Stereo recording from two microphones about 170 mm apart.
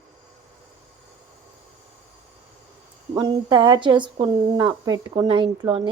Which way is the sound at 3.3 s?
25° right (ahead or behind).